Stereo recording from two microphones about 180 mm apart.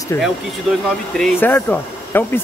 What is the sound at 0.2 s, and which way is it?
Speech, centre (ahead or behind).